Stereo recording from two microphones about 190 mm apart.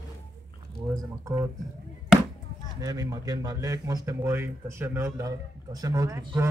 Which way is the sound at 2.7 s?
20° right (ahead or behind).